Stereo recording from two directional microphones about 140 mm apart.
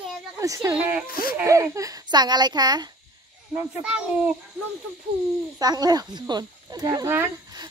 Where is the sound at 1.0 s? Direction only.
90° left.